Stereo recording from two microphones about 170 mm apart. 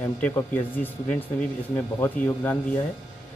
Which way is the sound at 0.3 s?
15° left (ahead or behind).